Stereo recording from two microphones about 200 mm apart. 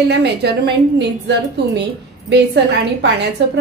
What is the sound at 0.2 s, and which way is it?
A woman's voice, 55° right (ahead or behind).